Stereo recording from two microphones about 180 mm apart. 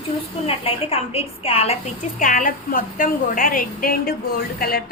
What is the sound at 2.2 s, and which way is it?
A woman's voice, 45° left (ahead or behind).